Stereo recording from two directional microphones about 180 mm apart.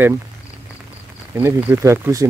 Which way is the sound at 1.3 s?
10° right (ahead or behind).